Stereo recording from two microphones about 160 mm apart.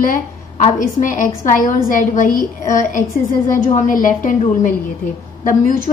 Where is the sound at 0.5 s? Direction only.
50° left (ahead or behind).